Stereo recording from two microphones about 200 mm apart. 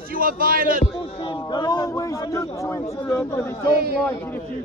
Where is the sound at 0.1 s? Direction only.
45° right (ahead or behind).